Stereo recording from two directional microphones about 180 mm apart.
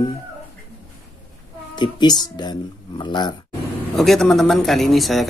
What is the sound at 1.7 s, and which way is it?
Speech, 25° left (ahead or behind).